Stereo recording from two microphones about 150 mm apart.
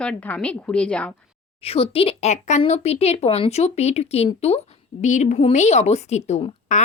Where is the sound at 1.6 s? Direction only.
40° left (ahead or behind).